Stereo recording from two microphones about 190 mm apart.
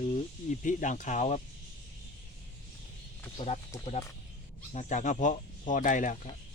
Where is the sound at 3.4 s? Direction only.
25° left (ahead or behind).